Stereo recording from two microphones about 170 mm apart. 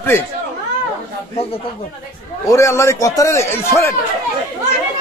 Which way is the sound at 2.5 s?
15° left (ahead or behind).